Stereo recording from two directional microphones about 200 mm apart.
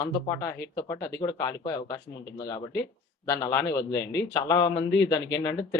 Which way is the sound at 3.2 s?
15° left (ahead or behind).